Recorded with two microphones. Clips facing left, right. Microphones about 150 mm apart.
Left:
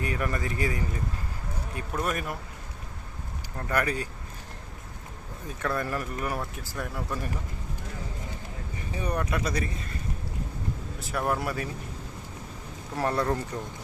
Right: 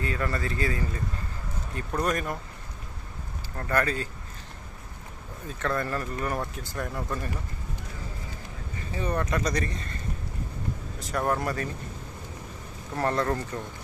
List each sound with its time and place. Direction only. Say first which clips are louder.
0.0 s speech: even; 15° left (ahead or behind)
3.7 s speech: right 1 dB; 10° left (ahead or behind)
5.5 s speech: right 1 dB; 10° left (ahead or behind)
8.9 s speech: right 1 dB; 15° left (ahead or behind)
11.0 s speech: right 1 dB; 5° left (ahead or behind)
13.0 s speech: even; 10° left (ahead or behind)